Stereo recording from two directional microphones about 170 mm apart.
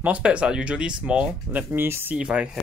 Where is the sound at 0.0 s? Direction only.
10° right (ahead or behind).